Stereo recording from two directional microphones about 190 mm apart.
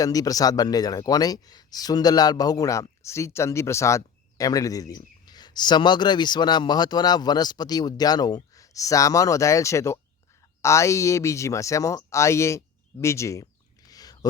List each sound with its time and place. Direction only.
0.0 s speech: 20° left (ahead or behind)